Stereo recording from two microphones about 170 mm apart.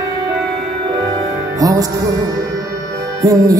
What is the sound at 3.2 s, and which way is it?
Music, 20° right (ahead or behind).